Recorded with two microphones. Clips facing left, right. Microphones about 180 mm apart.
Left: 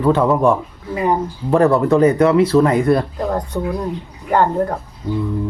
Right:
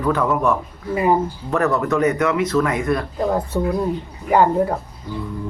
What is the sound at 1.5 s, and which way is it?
Speech, 30° left (ahead or behind).